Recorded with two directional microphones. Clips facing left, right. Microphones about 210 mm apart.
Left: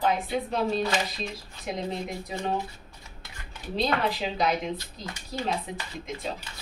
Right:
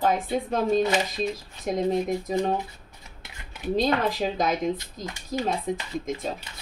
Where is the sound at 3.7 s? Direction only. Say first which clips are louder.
Right 3 dB; 45° right (ahead or behind).